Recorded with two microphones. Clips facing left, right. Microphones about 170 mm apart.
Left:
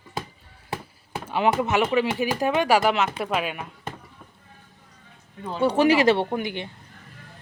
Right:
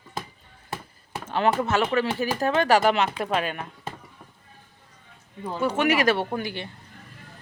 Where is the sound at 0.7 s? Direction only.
10° left (ahead or behind).